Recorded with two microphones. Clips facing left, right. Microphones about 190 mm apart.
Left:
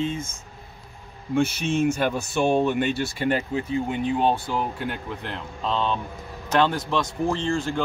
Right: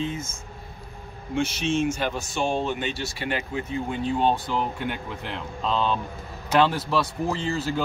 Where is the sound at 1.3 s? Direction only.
55° left (ahead or behind); by 3.7 s 35° left (ahead or behind).